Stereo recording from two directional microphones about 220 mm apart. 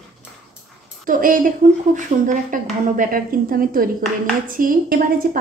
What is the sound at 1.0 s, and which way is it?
A woman's voice, 40° right (ahead or behind).